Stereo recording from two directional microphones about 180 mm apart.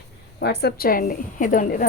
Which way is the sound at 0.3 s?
65° left (ahead or behind).